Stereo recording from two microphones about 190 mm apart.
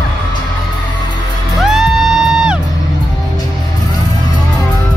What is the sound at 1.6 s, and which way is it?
Music, centre (ahead or behind).